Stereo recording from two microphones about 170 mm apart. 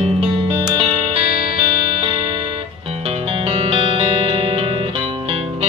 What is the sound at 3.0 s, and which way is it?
Music, 35° right (ahead or behind).